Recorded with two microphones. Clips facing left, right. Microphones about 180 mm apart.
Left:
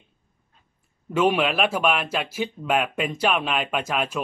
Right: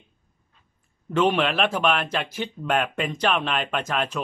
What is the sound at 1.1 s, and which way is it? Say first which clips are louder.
Speech: even; 10° left (ahead or behind).